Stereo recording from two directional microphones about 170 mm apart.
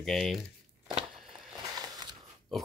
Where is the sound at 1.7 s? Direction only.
20° right (ahead or behind).